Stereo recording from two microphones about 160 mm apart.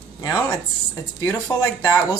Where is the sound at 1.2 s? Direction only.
20° left (ahead or behind).